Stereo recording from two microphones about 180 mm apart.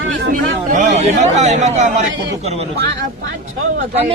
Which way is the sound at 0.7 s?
40° right (ahead or behind).